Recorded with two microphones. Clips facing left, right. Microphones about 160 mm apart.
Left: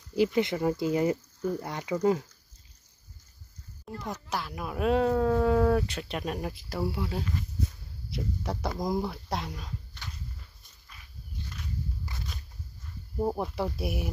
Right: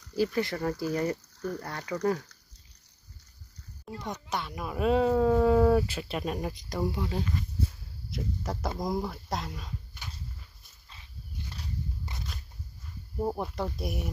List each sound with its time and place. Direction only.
0.1 s speech: 20° left (ahead or behind)
4.0 s speech: centre (ahead or behind)
12.1 s a sound: 20° right (ahead or behind)
13.2 s speech: 5° left (ahead or behind)